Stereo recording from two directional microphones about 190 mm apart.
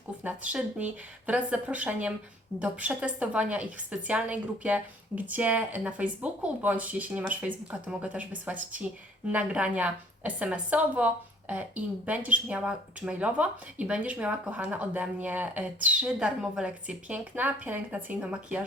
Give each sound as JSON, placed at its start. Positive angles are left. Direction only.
{"t": 0.2, "sound": "a woman's voice", "side_deg": -10}